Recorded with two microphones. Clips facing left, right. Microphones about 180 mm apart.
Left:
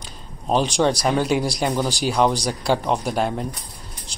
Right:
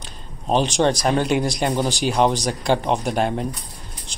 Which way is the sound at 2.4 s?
5° left (ahead or behind).